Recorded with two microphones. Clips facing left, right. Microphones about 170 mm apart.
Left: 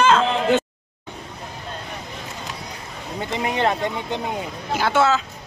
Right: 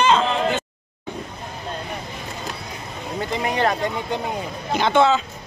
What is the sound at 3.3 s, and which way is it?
Speech, 20° left (ahead or behind).